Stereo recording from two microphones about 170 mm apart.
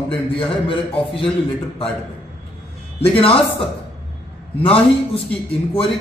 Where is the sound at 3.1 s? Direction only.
30° left (ahead or behind).